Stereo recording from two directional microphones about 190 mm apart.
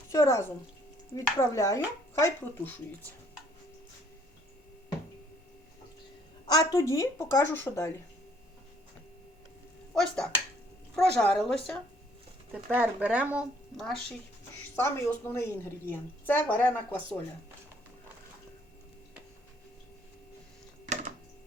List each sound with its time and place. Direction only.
0.1 s a woman's voice: 15° left (ahead or behind)
6.4 s a woman's voice: 20° left (ahead or behind)
9.9 s speech: 5° left (ahead or behind)
14.8 s a woman's voice: 15° left (ahead or behind)